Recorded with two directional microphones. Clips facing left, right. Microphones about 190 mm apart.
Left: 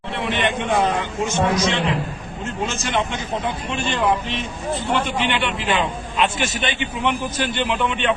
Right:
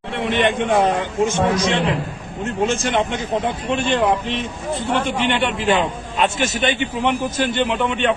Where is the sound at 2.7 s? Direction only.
55° right (ahead or behind).